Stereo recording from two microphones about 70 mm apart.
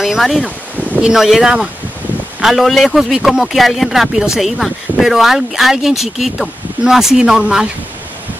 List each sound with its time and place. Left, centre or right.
0.0 s a man's voice: centre
0.7 s wind: right
1.0 s a man's voice: centre